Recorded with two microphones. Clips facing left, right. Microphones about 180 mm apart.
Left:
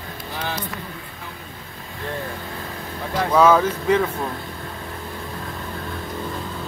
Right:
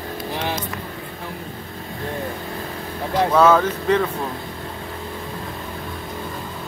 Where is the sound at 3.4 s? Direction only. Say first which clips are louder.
Left 1 dB; 10° left (ahead or behind).